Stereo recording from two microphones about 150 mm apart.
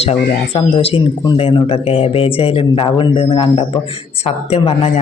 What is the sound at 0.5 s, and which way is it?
A man's voice, 40° left (ahead or behind).